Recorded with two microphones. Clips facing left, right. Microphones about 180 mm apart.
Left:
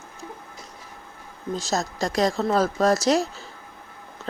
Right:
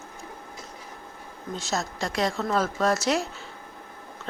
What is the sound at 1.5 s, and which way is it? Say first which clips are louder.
Speech: left 4 dB; 40° left (ahead or behind).